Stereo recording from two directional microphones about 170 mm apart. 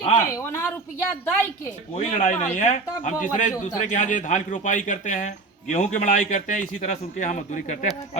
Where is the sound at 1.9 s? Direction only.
45° left (ahead or behind).